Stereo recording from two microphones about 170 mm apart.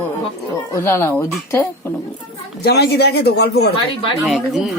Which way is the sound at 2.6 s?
70° left (ahead or behind).